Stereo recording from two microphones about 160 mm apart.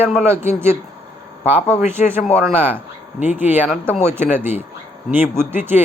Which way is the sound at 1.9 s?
15° right (ahead or behind).